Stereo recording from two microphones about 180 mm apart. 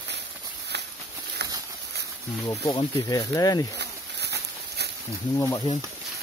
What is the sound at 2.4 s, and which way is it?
Speech, 20° left (ahead or behind).